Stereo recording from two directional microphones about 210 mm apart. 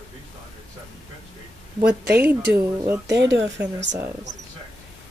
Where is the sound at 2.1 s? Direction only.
10° right (ahead or behind).